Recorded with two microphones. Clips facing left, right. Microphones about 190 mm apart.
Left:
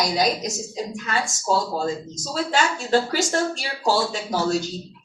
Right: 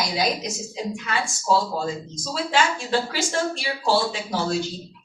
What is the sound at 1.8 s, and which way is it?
Speech, 40° left (ahead or behind).